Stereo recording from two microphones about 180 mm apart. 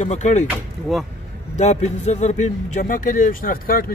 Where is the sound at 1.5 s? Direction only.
40° left (ahead or behind).